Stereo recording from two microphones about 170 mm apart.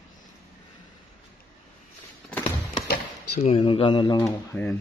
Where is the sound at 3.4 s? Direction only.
35° left (ahead or behind).